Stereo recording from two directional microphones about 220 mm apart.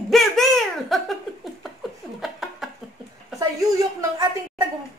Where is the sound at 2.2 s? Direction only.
Centre (ahead or behind).